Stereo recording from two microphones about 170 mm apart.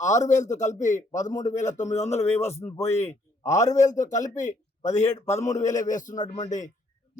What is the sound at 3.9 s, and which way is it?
Speech, 45° left (ahead or behind).